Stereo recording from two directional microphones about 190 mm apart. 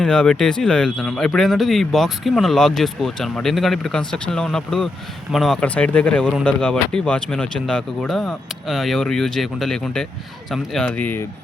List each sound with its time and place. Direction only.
0.0 s speech: 5° left (ahead or behind)